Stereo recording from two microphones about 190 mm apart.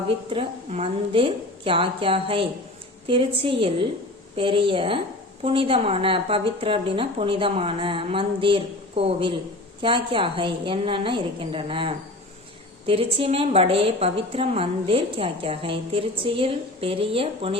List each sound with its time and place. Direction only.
0.3 s a woman's voice: 30° right (ahead or behind)